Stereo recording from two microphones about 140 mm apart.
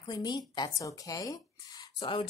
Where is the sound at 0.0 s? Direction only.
30° left (ahead or behind).